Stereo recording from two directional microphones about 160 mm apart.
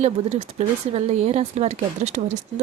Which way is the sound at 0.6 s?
45° right (ahead or behind).